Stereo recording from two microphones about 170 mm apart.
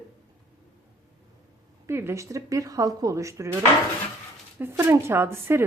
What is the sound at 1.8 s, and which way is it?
A woman's voice, 15° right (ahead or behind).